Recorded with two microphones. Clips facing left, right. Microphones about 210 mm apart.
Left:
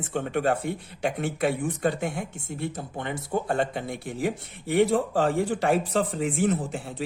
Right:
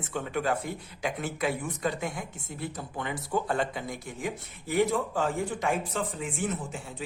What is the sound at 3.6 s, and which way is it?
Speech, 60° left (ahead or behind).